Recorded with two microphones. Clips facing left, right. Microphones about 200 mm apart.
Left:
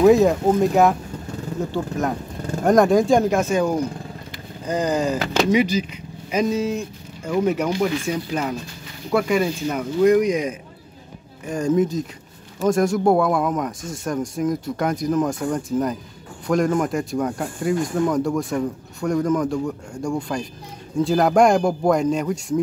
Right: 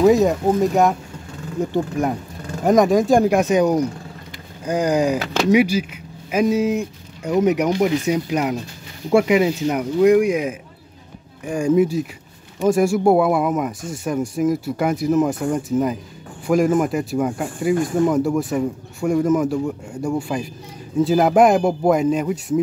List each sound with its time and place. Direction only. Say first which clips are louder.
0.0 s speech: even; centre (ahead or behind)
1.7 s speech: right 3 dB; 10° right (ahead or behind)
2.6 s speech: even; centre (ahead or behind)
3.2 s speech: right 3 dB; 10° right (ahead or behind)